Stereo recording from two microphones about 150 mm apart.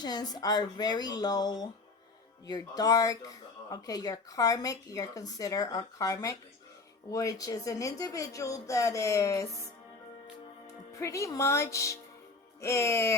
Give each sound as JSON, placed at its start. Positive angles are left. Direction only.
{"t": 0.0, "sound": "speech", "side_deg": 25}
{"t": 10.9, "sound": "speech", "side_deg": 20}